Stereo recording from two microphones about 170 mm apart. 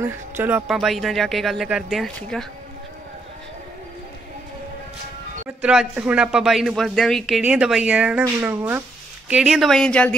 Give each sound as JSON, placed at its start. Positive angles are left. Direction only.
{"t": 0.0, "sound": "speech", "side_deg": -10}
{"t": 5.6, "sound": "speech", "side_deg": -5}
{"t": 9.3, "sound": "speech", "side_deg": 0}